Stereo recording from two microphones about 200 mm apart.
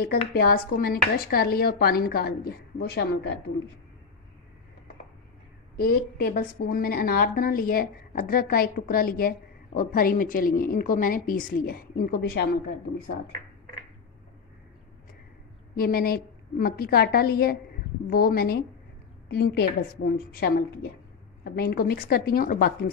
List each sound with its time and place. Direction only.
0.3 s a woman's voice: 50° left (ahead or behind)
5.8 s a woman's voice: 50° left (ahead or behind)
15.7 s a woman's voice: 45° left (ahead or behind)